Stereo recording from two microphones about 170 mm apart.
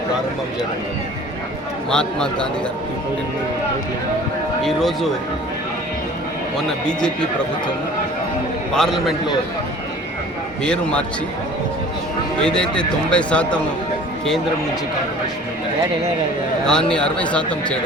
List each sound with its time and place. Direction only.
1.9 s a man's voice: 5° left (ahead or behind)
4.6 s a man's voice: centre (ahead or behind)
6.8 s a man's voice: 5° left (ahead or behind)
8.7 s a man's voice: centre (ahead or behind)
10.6 s a man's voice: 5° left (ahead or behind)
12.4 s speech: 5° left (ahead or behind)
16.6 s a man's voice: 5° left (ahead or behind)